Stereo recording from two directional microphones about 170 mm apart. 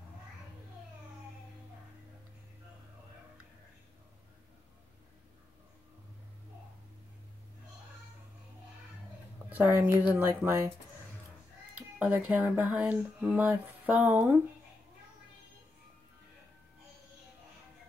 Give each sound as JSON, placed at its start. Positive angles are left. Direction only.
{"t": 9.5, "sound": "speech", "side_deg": -10}
{"t": 12.0, "sound": "speech", "side_deg": -5}